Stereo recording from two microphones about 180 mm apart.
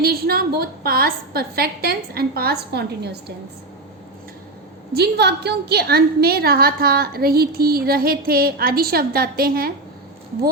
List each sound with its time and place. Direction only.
0.0 s a woman's voice: 60° right (ahead or behind)
4.9 s a woman's voice: 60° right (ahead or behind)